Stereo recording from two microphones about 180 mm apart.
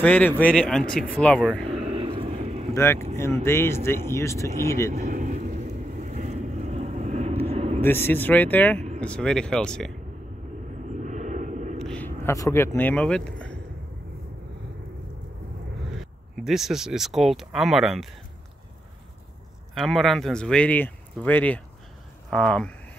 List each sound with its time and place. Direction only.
0.0 s speech: 10° left (ahead or behind)
1.9 s a sound: 30° right (ahead or behind)
2.7 s speech: 15° left (ahead or behind)
4.9 s vehicle: 45° right (ahead or behind)
7.8 s speech: 10° left (ahead or behind)
10.9 s vehicle: 40° right (ahead or behind)
11.8 s speech: 5° left (ahead or behind)
16.0 s speech: centre (ahead or behind)
19.7 s speech: centre (ahead or behind)